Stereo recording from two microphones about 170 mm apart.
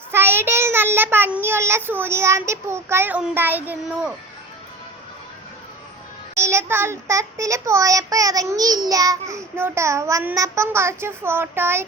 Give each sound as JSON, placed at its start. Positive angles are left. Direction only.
{"t": 0.1, "sound": "child singing", "side_deg": -15}
{"t": 6.3, "sound": "child singing", "side_deg": -15}